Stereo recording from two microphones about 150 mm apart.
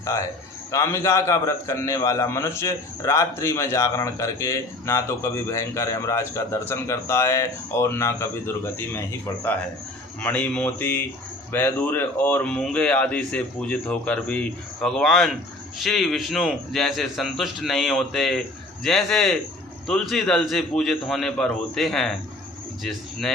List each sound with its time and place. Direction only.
0.7 s a man's voice: 20° left (ahead or behind); by 23.3 s centre (ahead or behind)